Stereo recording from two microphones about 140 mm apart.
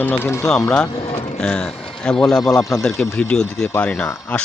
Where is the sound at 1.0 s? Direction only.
50° left (ahead or behind).